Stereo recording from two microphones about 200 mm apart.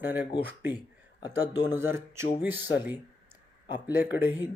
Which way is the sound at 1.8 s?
10° right (ahead or behind).